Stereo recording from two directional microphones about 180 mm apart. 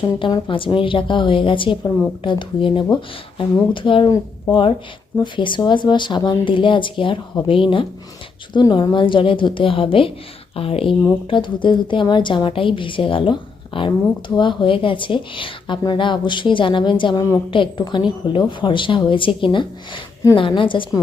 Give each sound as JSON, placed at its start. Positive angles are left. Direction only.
{"t": 0.0, "sound": "a woman's voice", "side_deg": 25}